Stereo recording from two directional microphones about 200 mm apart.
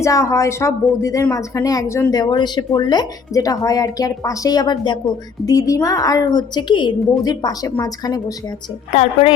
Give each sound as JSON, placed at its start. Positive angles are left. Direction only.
{"t": 0.0, "sound": "a woman's voice", "side_deg": 15}
{"t": 8.9, "sound": "a woman's voice", "side_deg": 35}